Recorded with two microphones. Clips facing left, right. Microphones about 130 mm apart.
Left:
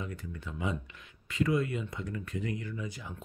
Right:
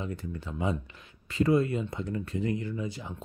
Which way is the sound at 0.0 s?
30° right (ahead or behind).